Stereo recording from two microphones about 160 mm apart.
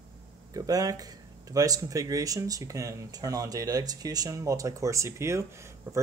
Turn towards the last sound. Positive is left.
turn(degrees=-20)  # may be behind; listen again after turning